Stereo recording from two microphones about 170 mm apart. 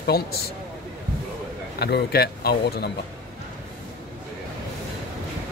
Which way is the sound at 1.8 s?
70° left (ahead or behind).